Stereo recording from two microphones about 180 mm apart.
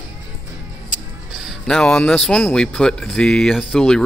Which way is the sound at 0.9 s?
Centre (ahead or behind).